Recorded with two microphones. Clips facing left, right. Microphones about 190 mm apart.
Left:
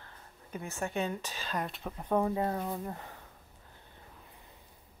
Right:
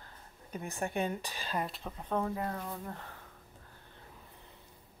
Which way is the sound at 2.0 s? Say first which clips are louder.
Left 4 dB; 10° left (ahead or behind).